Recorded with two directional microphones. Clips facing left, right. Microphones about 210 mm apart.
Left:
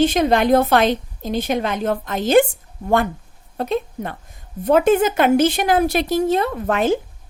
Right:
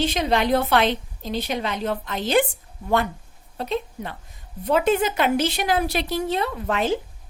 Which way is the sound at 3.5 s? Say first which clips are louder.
Left 5 dB; 50° left (ahead or behind).